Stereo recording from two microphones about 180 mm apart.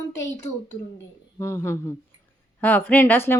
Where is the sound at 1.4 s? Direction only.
15° left (ahead or behind).